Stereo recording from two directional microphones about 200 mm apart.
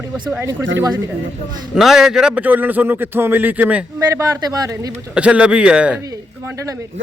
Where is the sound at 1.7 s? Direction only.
Centre (ahead or behind).